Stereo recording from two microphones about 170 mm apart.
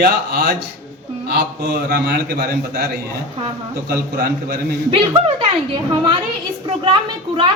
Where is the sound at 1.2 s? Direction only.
70° right (ahead or behind).